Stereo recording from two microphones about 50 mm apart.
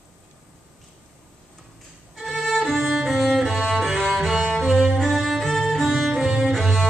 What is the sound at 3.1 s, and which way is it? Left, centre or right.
Cello, centre.